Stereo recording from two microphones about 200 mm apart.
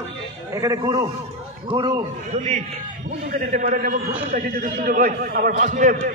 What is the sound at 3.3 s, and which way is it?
A man's voice, 40° right (ahead or behind).